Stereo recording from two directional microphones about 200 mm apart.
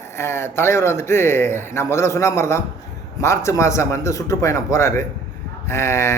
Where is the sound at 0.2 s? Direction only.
10° left (ahead or behind).